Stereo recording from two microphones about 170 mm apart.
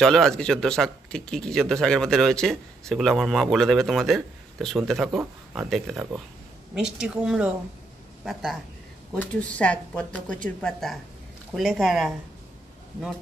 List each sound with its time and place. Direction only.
0.0 s a woman's voice: 5° left (ahead or behind)